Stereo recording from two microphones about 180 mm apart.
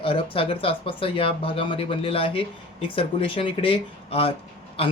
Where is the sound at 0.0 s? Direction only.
30° left (ahead or behind).